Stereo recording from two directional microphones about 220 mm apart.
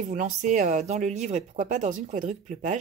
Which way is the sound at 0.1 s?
35° right (ahead or behind).